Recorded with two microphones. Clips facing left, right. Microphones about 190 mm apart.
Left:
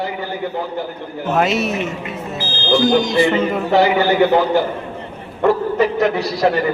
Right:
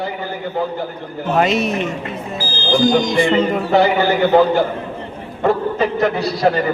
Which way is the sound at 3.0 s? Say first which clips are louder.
Even; 5° left (ahead or behind).